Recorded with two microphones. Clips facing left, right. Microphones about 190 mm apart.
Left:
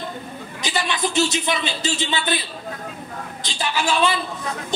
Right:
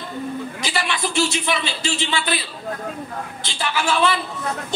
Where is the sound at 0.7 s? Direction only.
20° left (ahead or behind).